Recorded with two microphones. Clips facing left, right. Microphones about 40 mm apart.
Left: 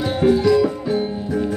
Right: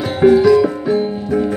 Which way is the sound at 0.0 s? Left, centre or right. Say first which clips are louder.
Right 6 dB; centre.